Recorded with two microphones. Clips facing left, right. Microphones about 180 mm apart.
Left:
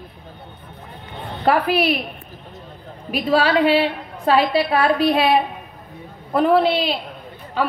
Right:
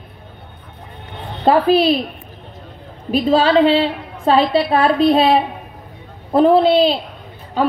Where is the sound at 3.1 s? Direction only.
25° right (ahead or behind).